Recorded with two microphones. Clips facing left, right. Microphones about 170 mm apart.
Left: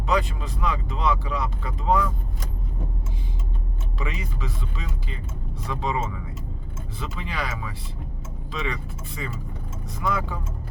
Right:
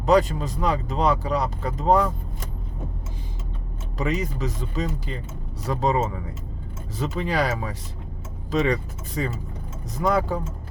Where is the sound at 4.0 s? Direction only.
40° right (ahead or behind).